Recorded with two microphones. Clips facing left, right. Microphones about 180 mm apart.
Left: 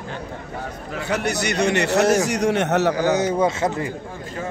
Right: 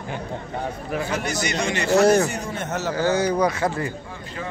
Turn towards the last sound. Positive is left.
turn(degrees=20)  # may be behind; listen again after turning